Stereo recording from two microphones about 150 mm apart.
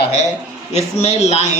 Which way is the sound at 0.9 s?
45° left (ahead or behind).